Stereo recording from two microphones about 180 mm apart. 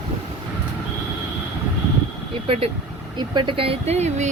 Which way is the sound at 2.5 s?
35° right (ahead or behind).